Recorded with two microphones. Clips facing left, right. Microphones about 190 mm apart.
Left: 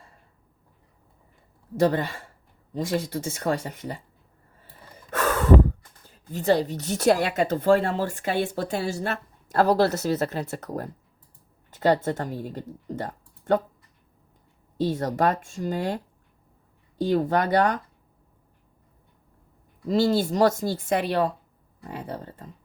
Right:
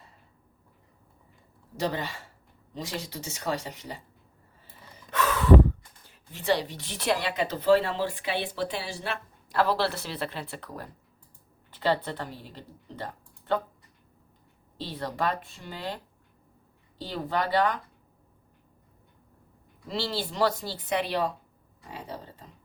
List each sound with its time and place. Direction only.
1.7 s speech: 50° left (ahead or behind)
4.9 s gasp: 50° left (ahead or behind)
6.1 s speech: 40° left (ahead or behind)
14.8 s speech: 45° left (ahead or behind)
17.0 s speech: 50° left (ahead or behind)
19.9 s speech: 45° left (ahead or behind)